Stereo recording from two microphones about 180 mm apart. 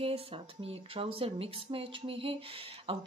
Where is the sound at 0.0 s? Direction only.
35° right (ahead or behind).